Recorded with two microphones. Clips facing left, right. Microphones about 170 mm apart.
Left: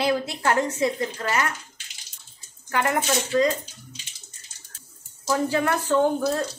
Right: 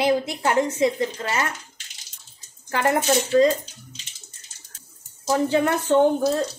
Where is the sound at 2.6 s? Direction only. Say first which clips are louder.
Right 3 dB; 30° right (ahead or behind).